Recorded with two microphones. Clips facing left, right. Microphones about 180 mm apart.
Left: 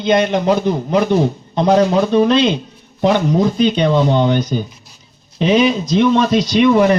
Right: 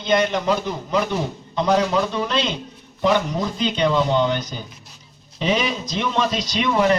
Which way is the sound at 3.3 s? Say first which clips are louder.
Left 10 dB; 60° left (ahead or behind).